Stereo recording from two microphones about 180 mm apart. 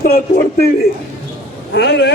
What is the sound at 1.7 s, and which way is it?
Speech, 65° left (ahead or behind).